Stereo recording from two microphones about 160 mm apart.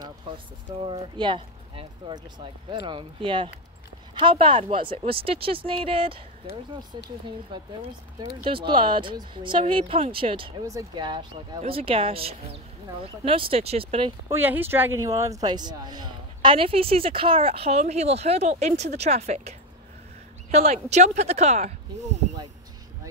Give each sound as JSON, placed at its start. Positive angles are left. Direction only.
{"t": 0.8, "sound": "speech", "side_deg": -30}
{"t": 10.6, "sound": "speech", "side_deg": -20}
{"t": 14.3, "sound": "speech", "side_deg": -15}
{"t": 20.5, "sound": "speech", "side_deg": -45}